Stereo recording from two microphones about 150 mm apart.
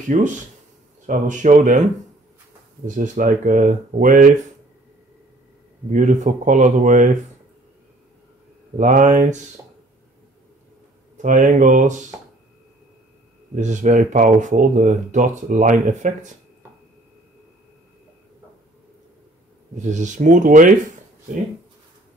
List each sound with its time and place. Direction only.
0.1 s speech: 55° right (ahead or behind)
3.0 s speech: 65° right (ahead or behind)
5.9 s speech: 55° right (ahead or behind)
8.7 s speech: 60° right (ahead or behind)
11.1 s speech: 55° right (ahead or behind)
13.6 s speech: 55° right (ahead or behind)
19.8 s speech: 55° right (ahead or behind)